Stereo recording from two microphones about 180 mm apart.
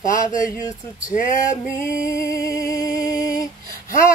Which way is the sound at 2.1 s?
20° left (ahead or behind).